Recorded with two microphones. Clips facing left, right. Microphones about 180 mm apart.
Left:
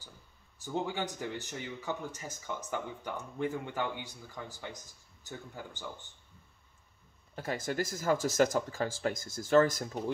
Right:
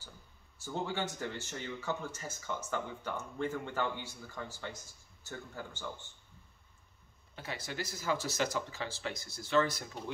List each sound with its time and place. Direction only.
0.6 s speech: 15° left (ahead or behind)
7.3 s speech: 45° left (ahead or behind)